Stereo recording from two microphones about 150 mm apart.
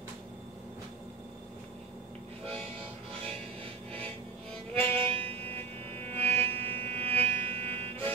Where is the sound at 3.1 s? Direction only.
40° right (ahead or behind).